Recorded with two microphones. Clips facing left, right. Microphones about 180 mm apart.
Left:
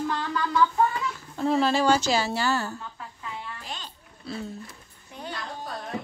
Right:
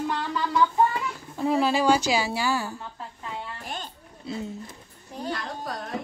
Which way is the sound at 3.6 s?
50° right (ahead or behind).